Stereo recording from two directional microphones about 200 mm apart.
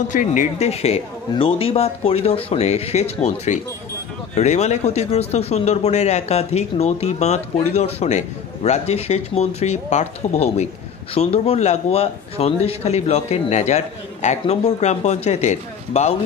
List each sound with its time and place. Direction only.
0.1 s speech: 40° left (ahead or behind)